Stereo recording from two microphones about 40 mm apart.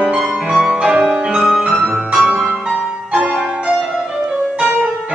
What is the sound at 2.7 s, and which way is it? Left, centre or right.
Music, right.